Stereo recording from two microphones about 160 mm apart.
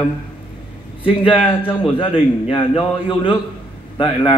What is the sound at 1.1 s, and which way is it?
A man's voice, 35° left (ahead or behind).